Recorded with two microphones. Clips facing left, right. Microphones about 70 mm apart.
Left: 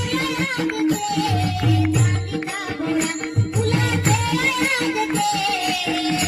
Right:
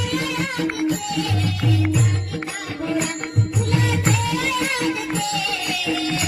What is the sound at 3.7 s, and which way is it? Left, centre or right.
Music, left.